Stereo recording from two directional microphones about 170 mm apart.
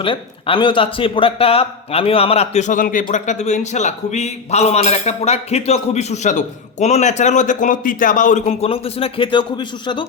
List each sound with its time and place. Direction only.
0.0 s a man's voice: 30° left (ahead or behind)